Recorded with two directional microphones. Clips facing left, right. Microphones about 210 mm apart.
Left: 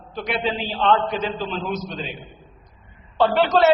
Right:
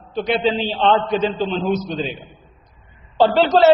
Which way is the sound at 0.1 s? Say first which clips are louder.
Right 6 dB; 30° right (ahead or behind).